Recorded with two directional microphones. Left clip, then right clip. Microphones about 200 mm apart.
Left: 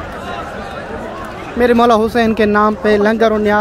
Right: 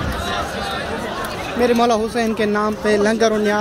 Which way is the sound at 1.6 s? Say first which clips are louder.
Left 6 dB; 30° left (ahead or behind).